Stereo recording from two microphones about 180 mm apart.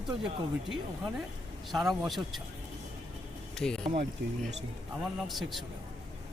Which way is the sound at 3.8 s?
35° right (ahead or behind).